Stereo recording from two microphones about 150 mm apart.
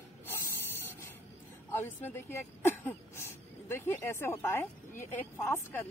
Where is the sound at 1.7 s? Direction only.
15° left (ahead or behind).